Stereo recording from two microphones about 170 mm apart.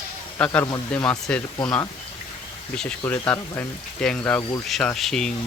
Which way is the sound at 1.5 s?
25° left (ahead or behind).